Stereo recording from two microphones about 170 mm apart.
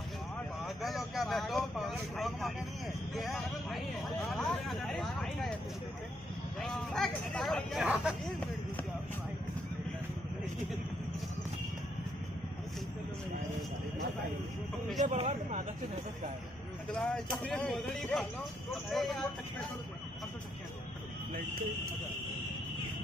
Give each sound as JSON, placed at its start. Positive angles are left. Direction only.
{"t": 0.8, "sound": "speech", "side_deg": 0}
{"t": 6.6, "sound": "speech", "side_deg": 5}
{"t": 15.0, "sound": "a man's voice", "side_deg": -45}
{"t": 16.9, "sound": "speech", "side_deg": 5}